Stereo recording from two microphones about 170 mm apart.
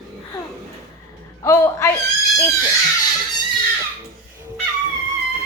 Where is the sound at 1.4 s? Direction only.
15° left (ahead or behind).